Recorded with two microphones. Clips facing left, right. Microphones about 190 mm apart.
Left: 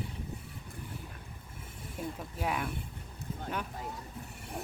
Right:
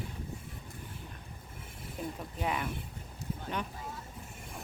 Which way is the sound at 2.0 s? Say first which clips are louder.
Even; 5° left (ahead or behind).